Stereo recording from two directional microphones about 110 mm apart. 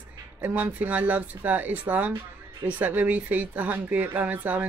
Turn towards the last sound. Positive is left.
turn(degrees=-15)  # may be behind; listen again after turning